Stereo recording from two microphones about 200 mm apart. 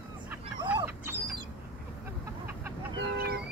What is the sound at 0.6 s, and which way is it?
Dog, 25° right (ahead or behind).